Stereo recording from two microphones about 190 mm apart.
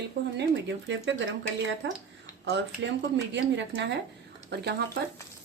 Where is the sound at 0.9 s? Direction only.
70° right (ahead or behind).